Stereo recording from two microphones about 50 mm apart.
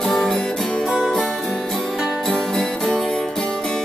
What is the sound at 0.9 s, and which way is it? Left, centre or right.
Music, centre.